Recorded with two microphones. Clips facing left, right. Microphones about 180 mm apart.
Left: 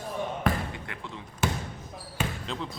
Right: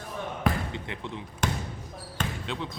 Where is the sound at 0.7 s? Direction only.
20° right (ahead or behind).